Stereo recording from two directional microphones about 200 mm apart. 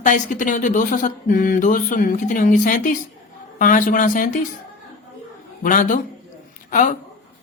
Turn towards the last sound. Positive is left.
turn(degrees=40)  # may be behind; listen again after turning